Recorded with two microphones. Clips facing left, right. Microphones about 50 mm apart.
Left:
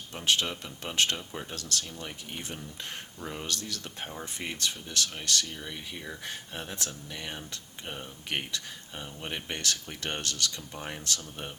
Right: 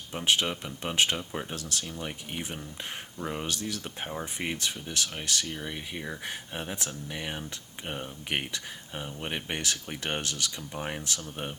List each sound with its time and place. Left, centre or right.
0.1 s speech: centre